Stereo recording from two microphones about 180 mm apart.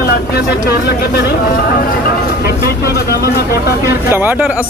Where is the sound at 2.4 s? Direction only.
60° left (ahead or behind).